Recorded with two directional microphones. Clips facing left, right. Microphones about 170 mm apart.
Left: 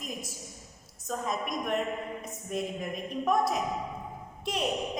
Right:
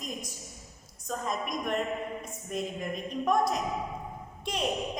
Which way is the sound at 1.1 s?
Centre (ahead or behind).